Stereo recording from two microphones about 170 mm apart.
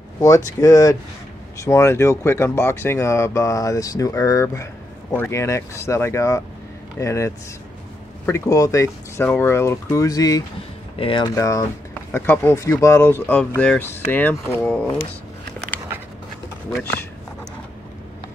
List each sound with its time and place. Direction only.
0.6 s speech: 20° left (ahead or behind)
11.3 s speech: 15° left (ahead or behind)